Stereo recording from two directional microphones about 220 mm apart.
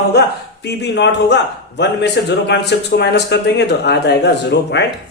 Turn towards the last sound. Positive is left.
turn(degrees=50)  # may be behind; listen again after turning